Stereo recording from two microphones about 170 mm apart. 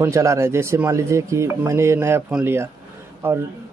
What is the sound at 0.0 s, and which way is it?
Speech, 20° right (ahead or behind).